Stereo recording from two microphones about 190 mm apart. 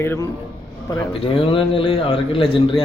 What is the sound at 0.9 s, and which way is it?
A man's voice, 30° left (ahead or behind).